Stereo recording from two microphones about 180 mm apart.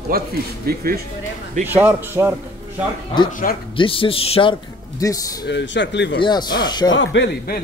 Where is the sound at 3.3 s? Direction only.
50° left (ahead or behind).